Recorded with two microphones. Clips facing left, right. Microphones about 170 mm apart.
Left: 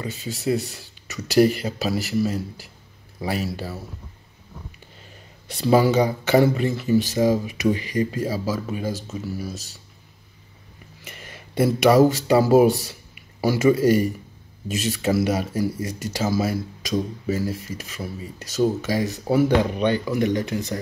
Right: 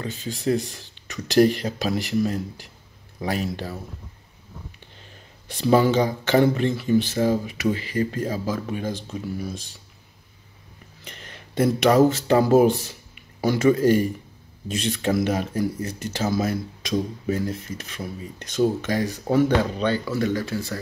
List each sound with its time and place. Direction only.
0.0 s speech: 5° left (ahead or behind)
5.5 s speech: 10° left (ahead or behind)
11.1 s speech: 10° left (ahead or behind)